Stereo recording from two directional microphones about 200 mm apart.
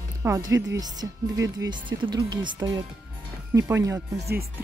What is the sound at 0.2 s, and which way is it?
Speech, 15° right (ahead or behind).